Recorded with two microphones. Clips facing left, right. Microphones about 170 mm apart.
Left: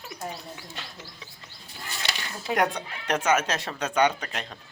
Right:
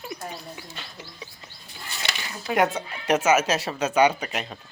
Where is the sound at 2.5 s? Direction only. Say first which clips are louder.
Right 3 dB; 5° right (ahead or behind).